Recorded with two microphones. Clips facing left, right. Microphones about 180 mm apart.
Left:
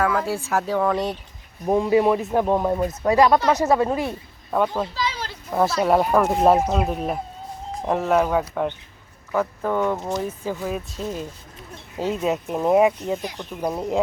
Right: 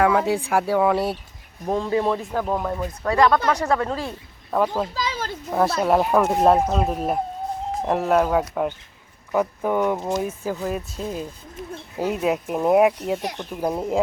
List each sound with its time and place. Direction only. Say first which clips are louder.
0.0 s speech: right 3 dB; 20° right (ahead or behind)
1.6 s speech: left 4 dB; 10° left (ahead or behind)
4.5 s speech: even; centre (ahead or behind)
4.9 s a sound: right 1 dB; 45° right (ahead or behind)
5.5 s speech: even; centre (ahead or behind)
9.3 s speech: right 1 dB; 15° right (ahead or behind)